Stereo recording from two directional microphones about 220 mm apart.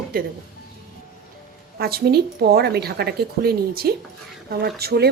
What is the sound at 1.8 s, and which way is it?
A woman's voice, 45° right (ahead or behind).